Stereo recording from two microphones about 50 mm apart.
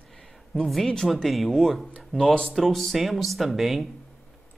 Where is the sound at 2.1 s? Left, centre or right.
Centre.